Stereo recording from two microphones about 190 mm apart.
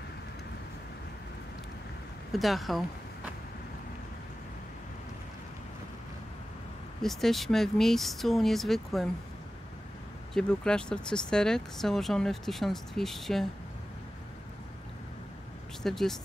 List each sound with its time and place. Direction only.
2.3 s speech: centre (ahead or behind)
7.0 s speech: centre (ahead or behind)
10.3 s speech: 5° left (ahead or behind)
15.8 s speech: centre (ahead or behind)